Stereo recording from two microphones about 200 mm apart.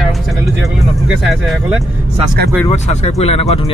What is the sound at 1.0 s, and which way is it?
Speech, 5° right (ahead or behind).